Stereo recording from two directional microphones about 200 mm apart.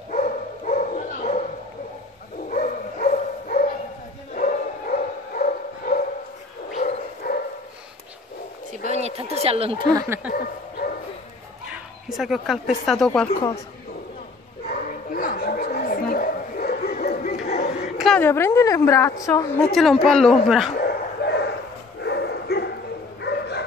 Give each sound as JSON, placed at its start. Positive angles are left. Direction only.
{"t": 0.1, "sound": "dog", "side_deg": 40}
{"t": 2.5, "sound": "dog", "side_deg": 40}
{"t": 4.4, "sound": "bow-wow", "side_deg": 45}
{"t": 6.8, "sound": "dog", "side_deg": 35}
{"t": 8.9, "sound": "a sound", "side_deg": -30}
{"t": 9.9, "sound": "speech", "side_deg": -10}
{"t": 10.3, "sound": "bow-wow", "side_deg": 45}
{"t": 11.7, "sound": "speech", "side_deg": 0}
{"t": 14.7, "sound": "dog", "side_deg": 45}
{"t": 17.2, "sound": "a sound", "side_deg": 35}
{"t": 17.9, "sound": "a woman's voice", "side_deg": 5}
{"t": 19.7, "sound": "speech", "side_deg": 0}
{"t": 20.7, "sound": "a sound", "side_deg": 55}
{"t": 22.0, "sound": "bow-wow", "side_deg": 55}